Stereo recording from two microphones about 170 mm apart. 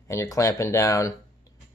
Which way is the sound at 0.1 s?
20° left (ahead or behind).